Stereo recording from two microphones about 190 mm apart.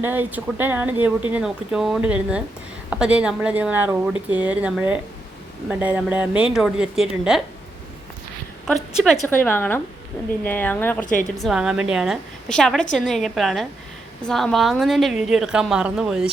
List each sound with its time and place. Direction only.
0.0 s a woman's voice: 10° right (ahead or behind)
8.6 s a woman's voice: centre (ahead or behind)
9.2 s a woman's voice: 10° left (ahead or behind)
11.0 s a woman's voice: 45° left (ahead or behind)
11.4 s a woman's voice: 5° right (ahead or behind)